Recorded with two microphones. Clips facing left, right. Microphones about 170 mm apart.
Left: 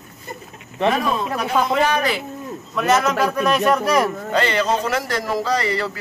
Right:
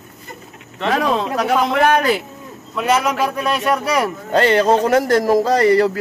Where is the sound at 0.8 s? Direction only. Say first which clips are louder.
Right 2 dB; 85° right; by 2.0 s 60° right (ahead or behind).